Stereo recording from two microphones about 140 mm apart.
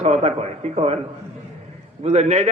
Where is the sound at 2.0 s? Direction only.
50° right (ahead or behind).